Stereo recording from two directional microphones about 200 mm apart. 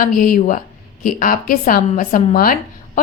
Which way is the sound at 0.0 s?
45° left (ahead or behind).